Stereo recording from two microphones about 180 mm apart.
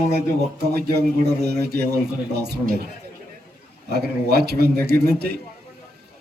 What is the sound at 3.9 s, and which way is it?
A man's voice, 65° right (ahead or behind).